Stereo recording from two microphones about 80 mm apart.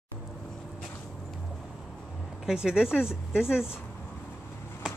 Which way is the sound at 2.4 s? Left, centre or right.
Centre.